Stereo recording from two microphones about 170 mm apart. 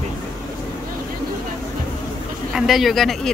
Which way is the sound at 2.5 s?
Centre (ahead or behind).